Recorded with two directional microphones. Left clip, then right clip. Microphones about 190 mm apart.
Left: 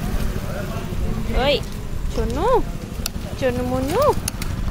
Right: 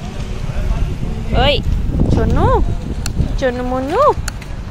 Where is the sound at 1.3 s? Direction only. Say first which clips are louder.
Right 5 dB; 30° right (ahead or behind).